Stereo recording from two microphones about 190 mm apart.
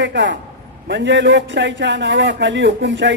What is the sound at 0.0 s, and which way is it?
Speech, 70° right (ahead or behind).